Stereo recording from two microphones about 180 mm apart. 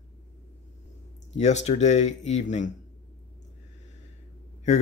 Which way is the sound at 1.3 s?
40° left (ahead or behind).